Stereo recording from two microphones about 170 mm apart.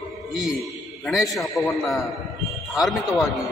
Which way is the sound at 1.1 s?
Centre (ahead or behind).